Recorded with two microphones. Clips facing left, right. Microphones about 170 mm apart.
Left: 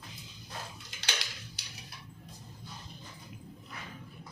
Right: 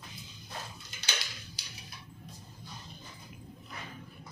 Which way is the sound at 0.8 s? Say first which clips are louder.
Left 1 dB; 85° left.